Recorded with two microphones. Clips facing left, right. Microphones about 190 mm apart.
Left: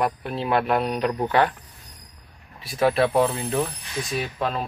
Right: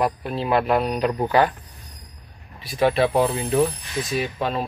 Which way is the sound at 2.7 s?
Centre (ahead or behind).